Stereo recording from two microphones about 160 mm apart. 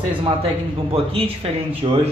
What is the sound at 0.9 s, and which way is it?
Speech, 35° right (ahead or behind).